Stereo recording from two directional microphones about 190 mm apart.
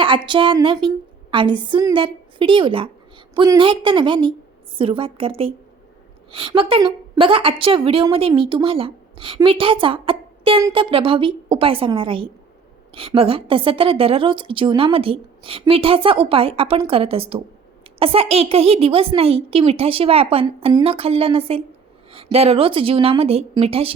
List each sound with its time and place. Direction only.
0.0 s a woman's voice: 25° right (ahead or behind)